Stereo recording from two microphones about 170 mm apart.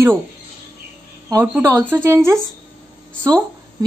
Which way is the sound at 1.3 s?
10° right (ahead or behind).